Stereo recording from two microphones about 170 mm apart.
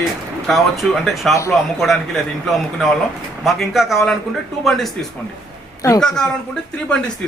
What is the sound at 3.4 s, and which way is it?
Speech, centre (ahead or behind).